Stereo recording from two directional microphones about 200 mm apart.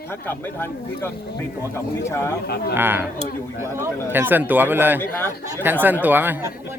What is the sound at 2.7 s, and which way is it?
Speech, 10° right (ahead or behind).